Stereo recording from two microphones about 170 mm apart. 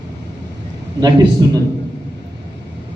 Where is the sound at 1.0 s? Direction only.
25° right (ahead or behind).